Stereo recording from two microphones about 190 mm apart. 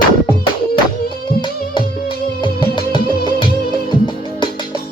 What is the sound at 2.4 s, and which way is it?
Music, 25° left (ahead or behind).